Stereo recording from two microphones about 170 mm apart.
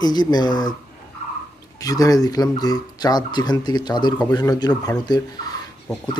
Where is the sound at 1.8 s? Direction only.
20° left (ahead or behind).